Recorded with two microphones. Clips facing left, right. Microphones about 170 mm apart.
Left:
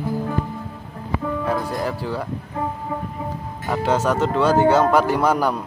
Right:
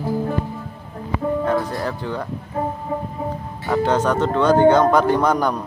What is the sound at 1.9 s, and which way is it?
Speech, 5° left (ahead or behind).